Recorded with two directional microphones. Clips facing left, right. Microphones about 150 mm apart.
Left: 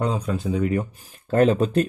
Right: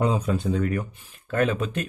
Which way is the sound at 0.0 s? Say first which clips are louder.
Right 1 dB; 5° right (ahead or behind).